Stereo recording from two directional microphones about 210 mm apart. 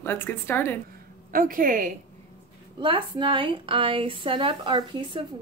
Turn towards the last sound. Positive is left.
turn(degrees=-25)  # may be behind; listen again after turning